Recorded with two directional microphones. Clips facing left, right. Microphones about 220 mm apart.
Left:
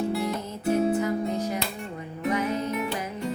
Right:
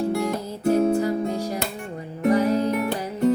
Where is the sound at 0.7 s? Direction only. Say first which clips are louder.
Right 4 dB; 35° right (ahead or behind).